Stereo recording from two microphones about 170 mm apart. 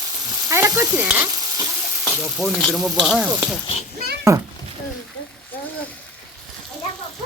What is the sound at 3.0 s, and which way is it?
Sizzle, 5° right (ahead or behind).